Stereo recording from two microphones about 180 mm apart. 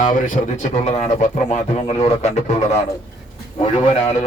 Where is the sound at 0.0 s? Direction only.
45° left (ahead or behind).